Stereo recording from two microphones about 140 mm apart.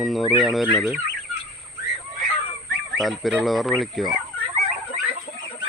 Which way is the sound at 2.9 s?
Centre (ahead or behind).